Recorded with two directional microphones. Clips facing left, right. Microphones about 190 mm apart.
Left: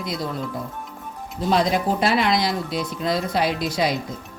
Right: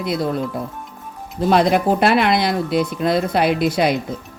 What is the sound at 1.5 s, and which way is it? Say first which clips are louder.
Speech: right 5 dB; 65° right (ahead or behind).